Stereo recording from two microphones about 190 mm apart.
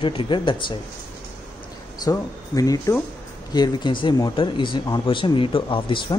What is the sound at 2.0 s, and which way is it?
Speech, 20° left (ahead or behind).